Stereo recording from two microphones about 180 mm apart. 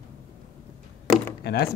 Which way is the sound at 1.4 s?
65° left (ahead or behind).